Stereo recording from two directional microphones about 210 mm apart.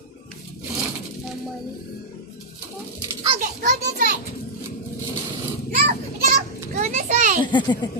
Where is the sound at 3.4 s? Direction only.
40° right (ahead or behind).